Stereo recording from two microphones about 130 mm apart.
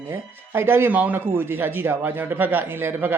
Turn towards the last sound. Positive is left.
turn(degrees=-15)  # may be behind; listen again after turning